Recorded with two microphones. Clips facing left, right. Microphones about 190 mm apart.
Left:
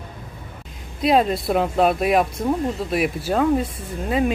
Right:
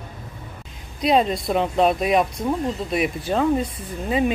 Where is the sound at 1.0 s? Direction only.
Centre (ahead or behind).